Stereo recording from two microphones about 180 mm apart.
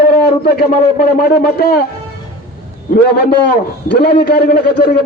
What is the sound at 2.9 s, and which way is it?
A man's voice, 60° left (ahead or behind).